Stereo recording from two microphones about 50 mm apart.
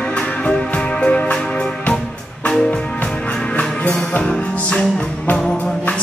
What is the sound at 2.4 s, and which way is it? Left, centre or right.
Music, centre.